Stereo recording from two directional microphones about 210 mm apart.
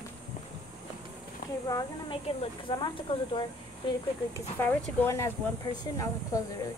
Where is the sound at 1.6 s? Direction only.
20° left (ahead or behind).